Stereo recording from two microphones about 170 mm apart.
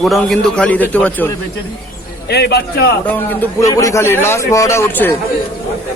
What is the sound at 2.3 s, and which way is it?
Speech, 75° left (ahead or behind).